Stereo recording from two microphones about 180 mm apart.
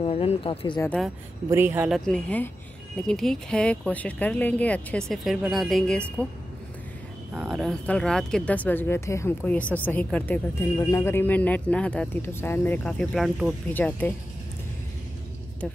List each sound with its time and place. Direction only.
0.0 s speech: 30° left (ahead or behind)
0.7 s speech: 5° left (ahead or behind)
1.5 s speech: 10° right (ahead or behind)
1.9 s speech: 5° left (ahead or behind)
7.3 s speech: 5° right (ahead or behind)